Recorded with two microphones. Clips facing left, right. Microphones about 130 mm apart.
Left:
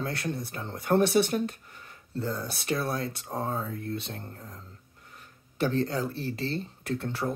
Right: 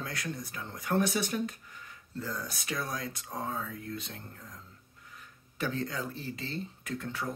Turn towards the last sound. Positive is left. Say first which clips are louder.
# left 5 dB
turn(degrees=35)  # may be behind; listen again after turning